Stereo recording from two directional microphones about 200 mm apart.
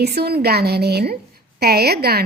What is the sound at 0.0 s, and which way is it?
A woman's voice, 55° right (ahead or behind).